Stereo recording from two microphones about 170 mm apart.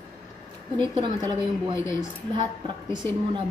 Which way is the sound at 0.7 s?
25° right (ahead or behind).